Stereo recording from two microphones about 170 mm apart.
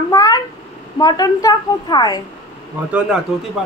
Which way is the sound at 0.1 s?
20° left (ahead or behind).